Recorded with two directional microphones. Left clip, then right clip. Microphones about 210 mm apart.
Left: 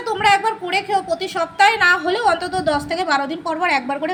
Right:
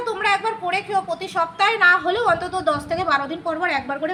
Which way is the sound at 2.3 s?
15° left (ahead or behind).